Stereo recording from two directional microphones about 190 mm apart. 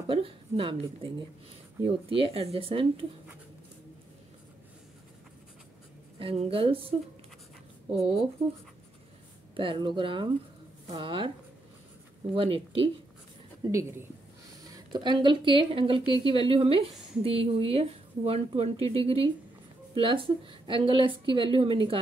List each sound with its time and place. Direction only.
0.1 s a woman's voice: 30° right (ahead or behind)
6.1 s a woman's voice: 30° right (ahead or behind)
9.6 s a woman's voice: 25° right (ahead or behind)
12.4 s a woman's voice: 30° right (ahead or behind)
13.7 s a woman's voice: 15° right (ahead or behind)